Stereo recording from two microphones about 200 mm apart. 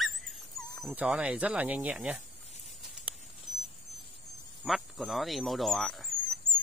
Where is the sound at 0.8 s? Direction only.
5° right (ahead or behind).